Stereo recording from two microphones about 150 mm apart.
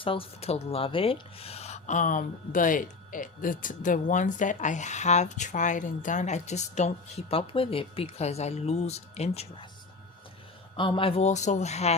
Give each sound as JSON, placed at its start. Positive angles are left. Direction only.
{"t": 0.0, "sound": "speech", "side_deg": 35}
{"t": 10.8, "sound": "speech", "side_deg": 35}